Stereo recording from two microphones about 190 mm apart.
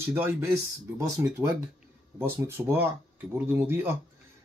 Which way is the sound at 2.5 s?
10° right (ahead or behind).